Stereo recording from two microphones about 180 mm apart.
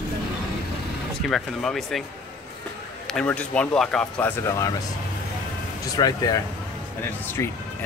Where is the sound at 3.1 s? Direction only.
5° left (ahead or behind).